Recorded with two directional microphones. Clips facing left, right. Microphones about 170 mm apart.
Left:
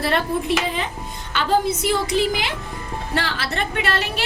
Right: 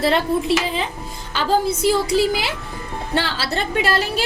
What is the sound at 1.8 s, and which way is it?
A woman's voice, 35° right (ahead or behind).